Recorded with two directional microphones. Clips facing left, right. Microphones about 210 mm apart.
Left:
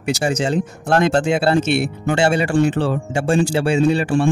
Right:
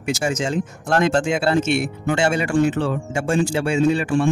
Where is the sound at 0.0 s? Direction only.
35° left (ahead or behind).